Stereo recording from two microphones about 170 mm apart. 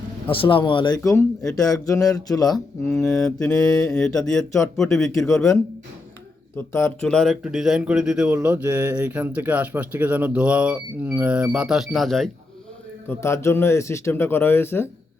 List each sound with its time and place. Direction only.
0.3 s speech: 30° left (ahead or behind)
2.9 s mantra: 5° left (ahead or behind)
6.6 s speech: 15° left (ahead or behind)
13.1 s speech: 15° left (ahead or behind)